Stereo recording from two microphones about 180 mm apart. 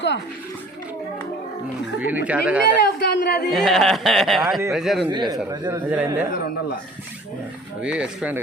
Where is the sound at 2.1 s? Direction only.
10° right (ahead or behind).